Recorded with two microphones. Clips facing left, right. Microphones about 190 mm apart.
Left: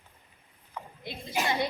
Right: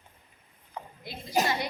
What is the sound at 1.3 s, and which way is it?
Speech, 40° right (ahead or behind).